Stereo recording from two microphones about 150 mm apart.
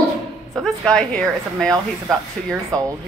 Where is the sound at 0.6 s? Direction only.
5° left (ahead or behind).